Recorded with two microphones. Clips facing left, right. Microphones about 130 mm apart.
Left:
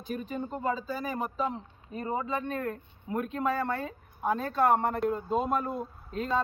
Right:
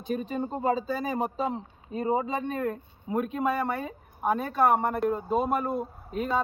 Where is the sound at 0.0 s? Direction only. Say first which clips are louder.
Right 4 dB; 30° right (ahead or behind).